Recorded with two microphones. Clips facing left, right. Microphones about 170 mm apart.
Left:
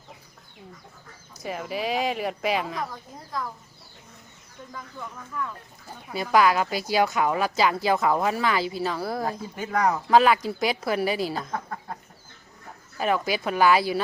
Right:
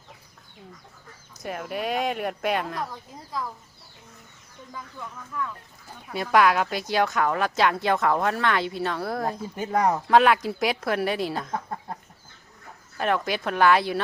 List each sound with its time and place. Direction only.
1.4 s a woman's voice: centre (ahead or behind)
4.9 s a woman's voice: centre (ahead or behind)
9.6 s speech: 25° right (ahead or behind)
10.1 s a woman's voice: centre (ahead or behind)
13.0 s a woman's voice: 5° left (ahead or behind)